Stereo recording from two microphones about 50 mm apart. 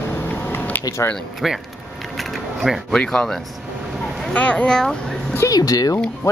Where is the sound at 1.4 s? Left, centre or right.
Centre.